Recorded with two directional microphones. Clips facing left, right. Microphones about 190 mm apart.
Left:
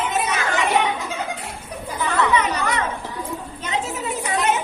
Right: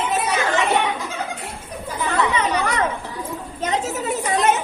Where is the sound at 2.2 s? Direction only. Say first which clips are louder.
Left 1 dB; 25° right (ahead or behind).